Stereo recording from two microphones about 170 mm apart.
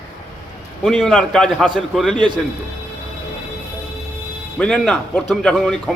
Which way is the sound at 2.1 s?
30° right (ahead or behind).